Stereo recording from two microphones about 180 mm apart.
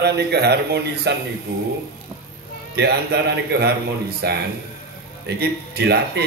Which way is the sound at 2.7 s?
65° right (ahead or behind).